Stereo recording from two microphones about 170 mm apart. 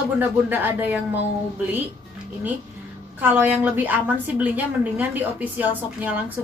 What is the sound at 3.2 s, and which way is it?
A woman's voice, 10° right (ahead or behind).